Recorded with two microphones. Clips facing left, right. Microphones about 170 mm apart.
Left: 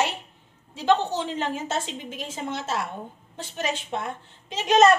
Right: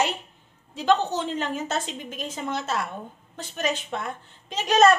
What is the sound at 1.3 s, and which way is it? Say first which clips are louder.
Speech: even; 25° left (ahead or behind).